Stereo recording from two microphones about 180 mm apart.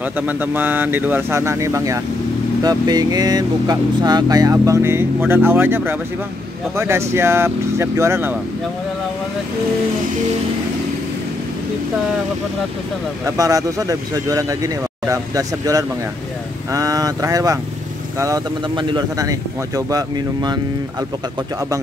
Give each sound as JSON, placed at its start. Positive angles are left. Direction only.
{"t": 0.3, "sound": "speech", "side_deg": -10}
{"t": 13.2, "sound": "speech", "side_deg": -20}